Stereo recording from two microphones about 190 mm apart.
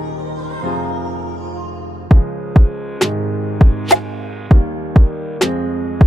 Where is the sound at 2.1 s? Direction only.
Centre (ahead or behind).